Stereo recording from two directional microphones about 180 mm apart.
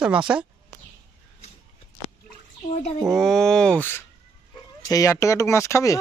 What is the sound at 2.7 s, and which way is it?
Speech, 40° left (ahead or behind).